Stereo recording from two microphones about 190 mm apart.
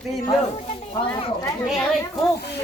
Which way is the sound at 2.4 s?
60° left (ahead or behind).